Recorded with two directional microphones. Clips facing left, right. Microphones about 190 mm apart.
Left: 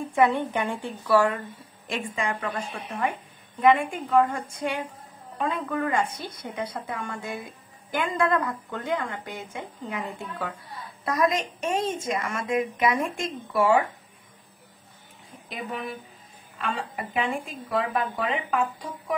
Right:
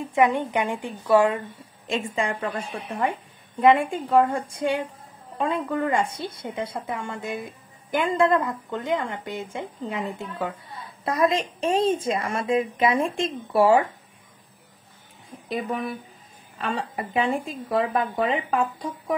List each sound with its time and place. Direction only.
0.1 s a woman's voice: 15° right (ahead or behind); by 13.7 s 30° right (ahead or behind)
16.5 s speech: 40° right (ahead or behind)